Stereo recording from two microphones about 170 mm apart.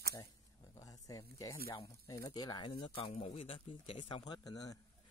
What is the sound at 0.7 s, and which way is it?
Speech, 20° left (ahead or behind).